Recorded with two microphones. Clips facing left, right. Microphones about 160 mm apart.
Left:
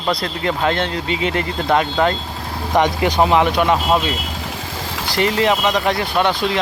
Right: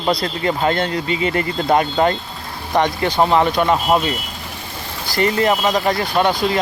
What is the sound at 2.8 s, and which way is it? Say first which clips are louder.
Speech: even; 15° left (ahead or behind).